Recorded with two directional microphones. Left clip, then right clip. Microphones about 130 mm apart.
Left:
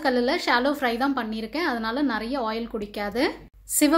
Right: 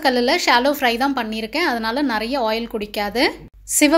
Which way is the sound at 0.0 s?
25° right (ahead or behind).